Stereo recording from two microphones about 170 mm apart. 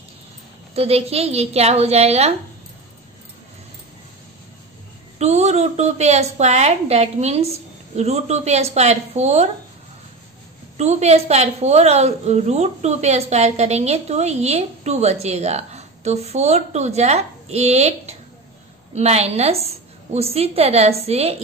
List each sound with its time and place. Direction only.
0.7 s a woman's voice: 35° right (ahead or behind)
5.2 s a woman's voice: 40° right (ahead or behind)
10.8 s a woman's voice: 40° right (ahead or behind)